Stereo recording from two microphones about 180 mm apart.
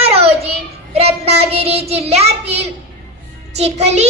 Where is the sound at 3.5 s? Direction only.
35° right (ahead or behind).